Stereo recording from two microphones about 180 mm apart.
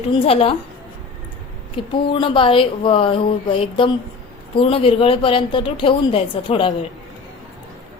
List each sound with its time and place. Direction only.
0.1 s a woman's voice: 30° left (ahead or behind)
1.7 s a woman's voice: 30° left (ahead or behind)